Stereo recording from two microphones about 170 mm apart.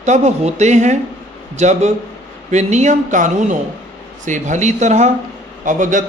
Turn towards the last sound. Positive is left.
turn(degrees=-50)  # may be behind; listen again after turning